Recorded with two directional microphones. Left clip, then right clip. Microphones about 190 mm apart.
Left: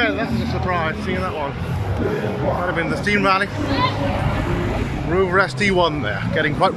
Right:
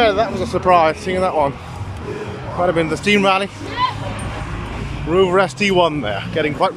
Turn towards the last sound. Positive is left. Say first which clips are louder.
# even
turn(degrees=-5)  # may be behind; listen again after turning